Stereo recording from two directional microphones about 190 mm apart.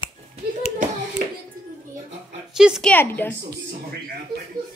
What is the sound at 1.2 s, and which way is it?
Hands, 50° right (ahead or behind).